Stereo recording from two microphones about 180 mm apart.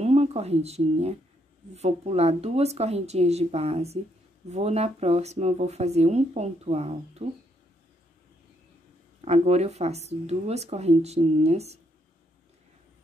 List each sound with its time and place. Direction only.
0.0 s speech: 35° right (ahead or behind)
9.2 s speech: 35° right (ahead or behind)